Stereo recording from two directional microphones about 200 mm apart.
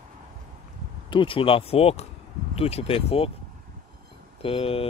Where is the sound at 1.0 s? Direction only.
25° left (ahead or behind).